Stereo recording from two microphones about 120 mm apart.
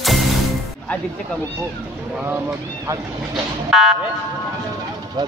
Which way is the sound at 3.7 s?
5° right (ahead or behind).